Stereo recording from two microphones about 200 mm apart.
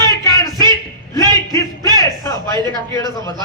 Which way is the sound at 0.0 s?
15° left (ahead or behind).